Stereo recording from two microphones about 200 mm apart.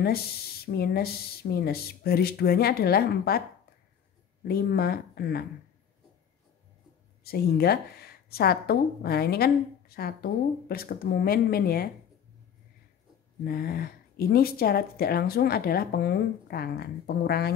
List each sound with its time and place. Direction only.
0.0 s speech: 50° left (ahead or behind)
4.5 s speech: 50° left (ahead or behind)
7.2 s speech: 50° left (ahead or behind)
13.4 s speech: 50° left (ahead or behind)